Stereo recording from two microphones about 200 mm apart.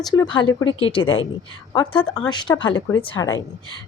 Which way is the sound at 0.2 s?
25° left (ahead or behind).